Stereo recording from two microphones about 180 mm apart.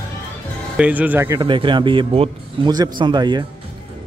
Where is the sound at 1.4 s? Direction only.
25° right (ahead or behind).